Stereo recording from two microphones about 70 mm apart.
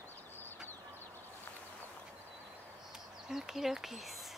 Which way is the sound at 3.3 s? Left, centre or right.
Centre.